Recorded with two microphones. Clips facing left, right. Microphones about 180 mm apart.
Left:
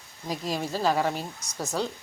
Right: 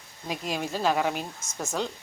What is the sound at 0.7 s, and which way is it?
Speech, centre (ahead or behind).